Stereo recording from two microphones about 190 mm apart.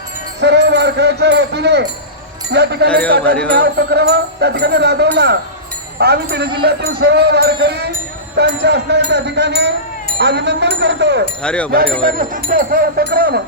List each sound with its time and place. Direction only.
0.3 s speech: 60° right (ahead or behind)
3.2 s speech: 5° left (ahead or behind)
3.5 s speech: 55° right (ahead or behind)
11.4 s speech: 5° left (ahead or behind)
12.0 s speech: 45° right (ahead or behind)